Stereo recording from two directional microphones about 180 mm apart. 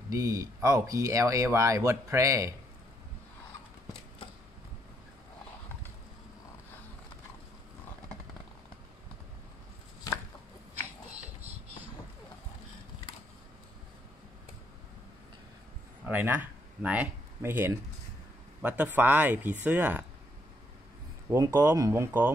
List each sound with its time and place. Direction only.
0.1 s speech: 20° right (ahead or behind)
16.1 s speech: 10° right (ahead or behind)
21.3 s speech: 20° right (ahead or behind)